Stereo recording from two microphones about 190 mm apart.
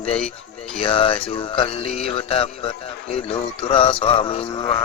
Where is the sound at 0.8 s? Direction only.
25° left (ahead or behind).